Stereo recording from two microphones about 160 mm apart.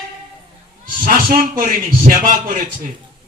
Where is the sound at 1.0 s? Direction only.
65° right (ahead or behind).